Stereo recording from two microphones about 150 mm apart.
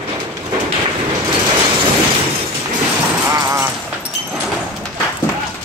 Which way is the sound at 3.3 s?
20° right (ahead or behind).